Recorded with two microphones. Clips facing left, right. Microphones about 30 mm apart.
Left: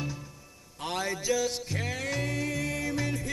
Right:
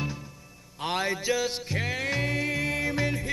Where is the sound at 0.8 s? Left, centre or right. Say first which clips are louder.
Right 3 dB; right.